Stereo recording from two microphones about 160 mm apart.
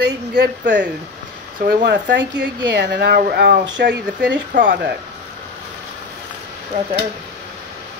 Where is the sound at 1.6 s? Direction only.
75° right (ahead or behind).